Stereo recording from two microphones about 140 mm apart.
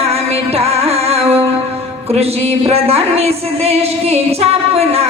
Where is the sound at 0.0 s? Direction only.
45° right (ahead or behind).